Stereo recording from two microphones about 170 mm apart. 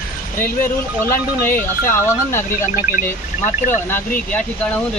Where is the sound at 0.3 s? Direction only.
15° left (ahead or behind).